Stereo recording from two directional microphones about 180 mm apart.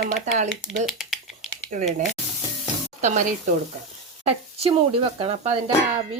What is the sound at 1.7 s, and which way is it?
Speech, 40° right (ahead or behind).